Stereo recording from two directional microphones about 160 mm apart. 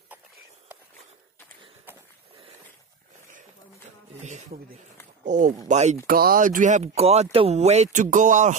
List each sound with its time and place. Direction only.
1.9 s a sound: 10° right (ahead or behind)
4.2 s speech: 45° right (ahead or behind)
6.0 s speech: 65° right (ahead or behind); by 8.5 s 50° right (ahead or behind)